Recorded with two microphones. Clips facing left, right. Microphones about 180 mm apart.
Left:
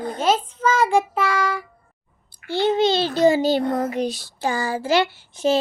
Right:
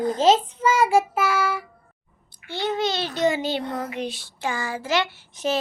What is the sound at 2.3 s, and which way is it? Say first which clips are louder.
A child's voice: left 7 dB; 30° left (ahead or behind).